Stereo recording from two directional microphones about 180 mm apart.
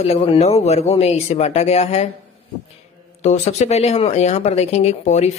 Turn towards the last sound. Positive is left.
turn(degrees=40)  # may be behind; listen again after turning